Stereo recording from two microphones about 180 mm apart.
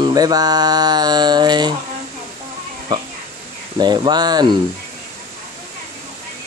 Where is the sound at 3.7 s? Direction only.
25° right (ahead or behind).